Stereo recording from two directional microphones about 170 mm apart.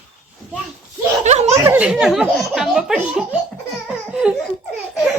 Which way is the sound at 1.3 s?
40° right (ahead or behind).